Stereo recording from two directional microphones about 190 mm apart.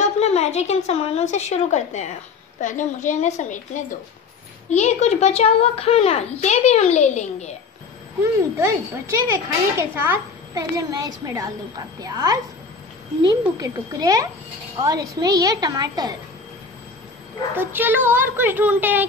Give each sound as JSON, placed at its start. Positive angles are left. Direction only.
{"t": 0.0, "sound": "a woman's voice", "side_deg": 35}
{"t": 8.2, "sound": "a woman's voice", "side_deg": -15}
{"t": 9.8, "sound": "a woman's voice", "side_deg": -10}
{"t": 17.6, "sound": "a woman's voice", "side_deg": -10}